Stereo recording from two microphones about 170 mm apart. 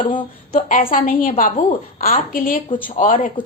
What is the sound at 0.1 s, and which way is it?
A woman's voice, 50° left (ahead or behind).